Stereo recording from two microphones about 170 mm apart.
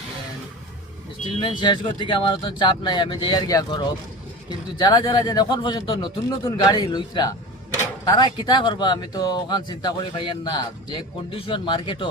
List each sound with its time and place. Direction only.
1.4 s speech: 30° left (ahead or behind)